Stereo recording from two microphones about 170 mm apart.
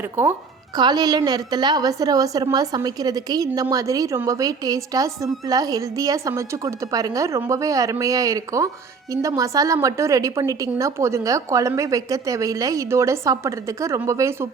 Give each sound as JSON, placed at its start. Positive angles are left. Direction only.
{"t": 0.2, "sound": "speech", "side_deg": -10}
{"t": 0.8, "sound": "a woman's voice", "side_deg": -25}